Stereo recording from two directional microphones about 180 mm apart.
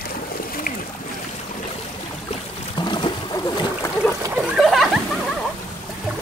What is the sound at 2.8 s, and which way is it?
Boat, 25° left (ahead or behind).